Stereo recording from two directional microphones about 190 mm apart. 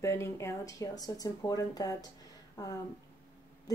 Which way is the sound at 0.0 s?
15° left (ahead or behind).